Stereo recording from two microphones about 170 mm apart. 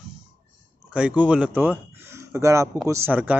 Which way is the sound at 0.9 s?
5° right (ahead or behind).